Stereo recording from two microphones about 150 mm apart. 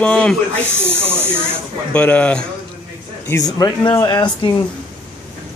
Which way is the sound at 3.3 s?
25° left (ahead or behind).